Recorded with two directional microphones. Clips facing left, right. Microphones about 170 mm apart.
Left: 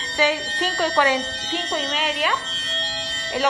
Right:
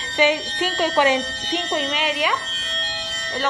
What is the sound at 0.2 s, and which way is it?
Speech, 15° right (ahead or behind).